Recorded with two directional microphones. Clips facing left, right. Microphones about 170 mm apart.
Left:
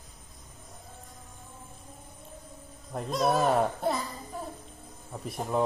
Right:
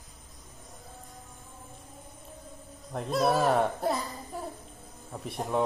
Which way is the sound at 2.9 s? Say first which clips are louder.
Right 1 dB; centre (ahead or behind).